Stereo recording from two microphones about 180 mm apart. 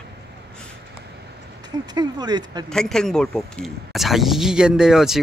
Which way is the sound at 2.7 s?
5° left (ahead or behind).